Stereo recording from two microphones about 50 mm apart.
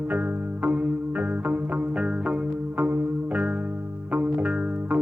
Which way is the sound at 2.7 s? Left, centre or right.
Right.